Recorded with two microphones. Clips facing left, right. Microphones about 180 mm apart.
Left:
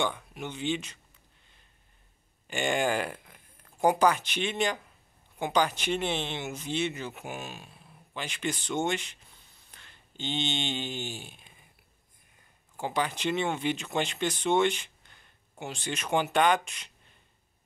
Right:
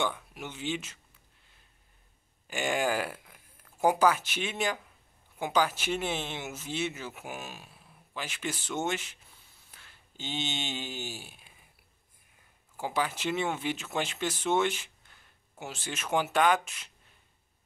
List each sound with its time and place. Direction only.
0.0 s speech: 5° right (ahead or behind)
2.4 s speech: 5° right (ahead or behind)
12.7 s speech: 5° right (ahead or behind)